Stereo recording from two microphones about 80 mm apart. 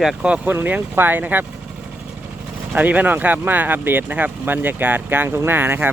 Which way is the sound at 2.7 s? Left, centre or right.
Centre.